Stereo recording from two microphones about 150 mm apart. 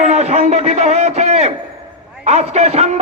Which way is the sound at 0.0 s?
50° right (ahead or behind).